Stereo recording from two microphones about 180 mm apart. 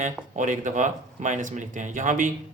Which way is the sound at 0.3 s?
45° right (ahead or behind).